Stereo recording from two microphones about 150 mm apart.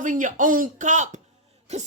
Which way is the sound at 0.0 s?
60° right (ahead or behind).